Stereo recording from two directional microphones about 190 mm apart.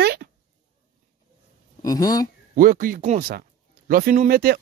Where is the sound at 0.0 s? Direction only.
55° right (ahead or behind).